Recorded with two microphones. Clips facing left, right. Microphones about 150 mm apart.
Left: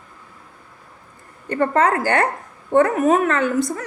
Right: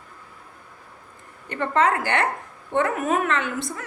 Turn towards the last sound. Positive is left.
turn(degrees=40)  # may be behind; listen again after turning